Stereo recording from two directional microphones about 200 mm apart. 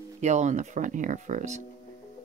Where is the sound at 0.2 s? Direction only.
35° right (ahead or behind).